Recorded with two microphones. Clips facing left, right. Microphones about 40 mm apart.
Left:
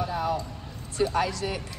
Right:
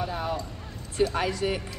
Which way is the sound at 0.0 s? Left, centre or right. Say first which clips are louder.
Left 2 dB; right.